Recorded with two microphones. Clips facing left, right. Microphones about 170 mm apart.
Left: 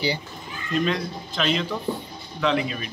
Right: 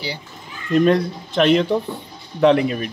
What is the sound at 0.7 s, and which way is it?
A man's voice, 55° right (ahead or behind).